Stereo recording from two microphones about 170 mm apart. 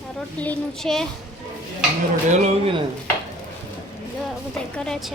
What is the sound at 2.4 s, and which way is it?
Speech, 35° right (ahead or behind).